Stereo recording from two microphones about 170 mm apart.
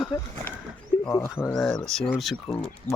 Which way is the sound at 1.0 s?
15° left (ahead or behind).